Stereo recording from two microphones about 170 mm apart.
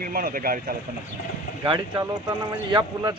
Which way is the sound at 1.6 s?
20° right (ahead or behind).